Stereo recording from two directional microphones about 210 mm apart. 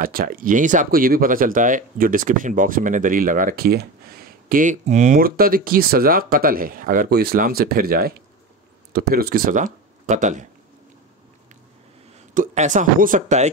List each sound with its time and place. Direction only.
0.0 s speech: 45° right (ahead or behind)
12.4 s speech: 35° right (ahead or behind)